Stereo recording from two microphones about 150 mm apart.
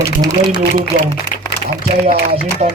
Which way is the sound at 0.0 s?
25° right (ahead or behind).